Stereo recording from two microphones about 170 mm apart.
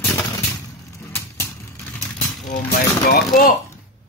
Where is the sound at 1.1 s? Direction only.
15° left (ahead or behind).